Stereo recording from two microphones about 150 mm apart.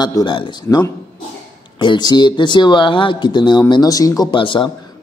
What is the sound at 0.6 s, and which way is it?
Speech, 20° left (ahead or behind).